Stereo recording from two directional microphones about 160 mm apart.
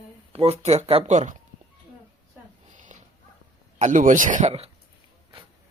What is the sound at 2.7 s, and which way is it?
Dog, 50° right (ahead or behind).